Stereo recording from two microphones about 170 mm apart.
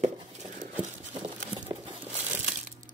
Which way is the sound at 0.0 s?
45° right (ahead or behind).